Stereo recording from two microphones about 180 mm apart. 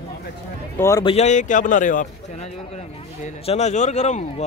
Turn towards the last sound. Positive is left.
turn(degrees=40)  # may be behind; listen again after turning